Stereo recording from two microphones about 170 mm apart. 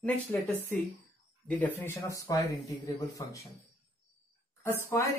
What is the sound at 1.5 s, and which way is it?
Speech, 10° left (ahead or behind).